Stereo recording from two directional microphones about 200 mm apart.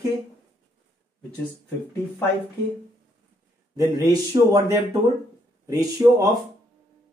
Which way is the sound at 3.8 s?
20° right (ahead or behind).